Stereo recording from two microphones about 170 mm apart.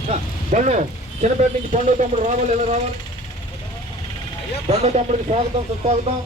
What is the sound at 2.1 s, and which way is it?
Speech, 40° right (ahead or behind).